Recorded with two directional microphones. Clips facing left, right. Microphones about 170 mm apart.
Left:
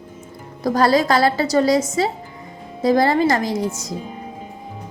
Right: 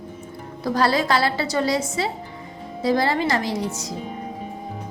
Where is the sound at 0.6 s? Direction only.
45° left (ahead or behind).